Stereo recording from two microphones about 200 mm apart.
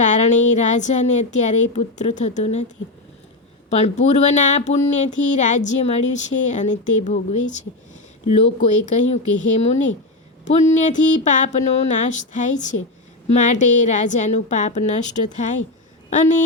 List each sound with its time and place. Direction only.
0.0 s a woman's voice: 40° left (ahead or behind)
3.8 s a woman's voice: 35° left (ahead or behind)